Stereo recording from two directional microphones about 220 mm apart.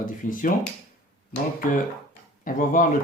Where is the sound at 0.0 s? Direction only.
35° left (ahead or behind).